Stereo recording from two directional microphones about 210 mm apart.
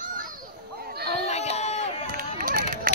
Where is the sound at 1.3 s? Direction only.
30° left (ahead or behind).